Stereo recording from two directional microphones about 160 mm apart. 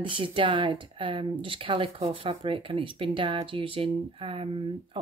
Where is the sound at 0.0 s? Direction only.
30° right (ahead or behind).